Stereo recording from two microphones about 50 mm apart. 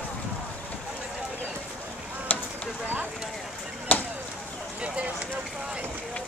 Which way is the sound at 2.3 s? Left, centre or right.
Left.